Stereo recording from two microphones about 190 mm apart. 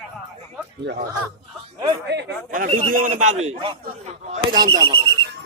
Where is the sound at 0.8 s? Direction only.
65° right (ahead or behind).